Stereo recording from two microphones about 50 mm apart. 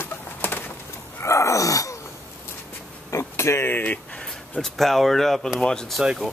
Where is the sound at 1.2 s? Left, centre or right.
Left.